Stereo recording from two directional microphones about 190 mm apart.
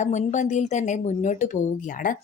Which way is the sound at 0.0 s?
40° left (ahead or behind).